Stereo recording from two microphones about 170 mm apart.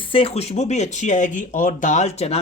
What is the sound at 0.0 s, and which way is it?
Speech, 30° left (ahead or behind).